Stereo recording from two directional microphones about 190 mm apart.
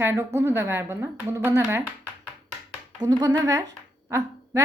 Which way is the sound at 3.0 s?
20° right (ahead or behind).